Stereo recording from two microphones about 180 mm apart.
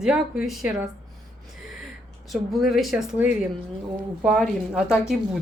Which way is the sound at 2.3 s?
Centre (ahead or behind).